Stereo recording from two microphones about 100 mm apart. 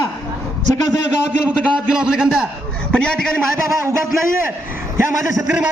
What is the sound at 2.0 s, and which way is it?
Speech, 5° right (ahead or behind).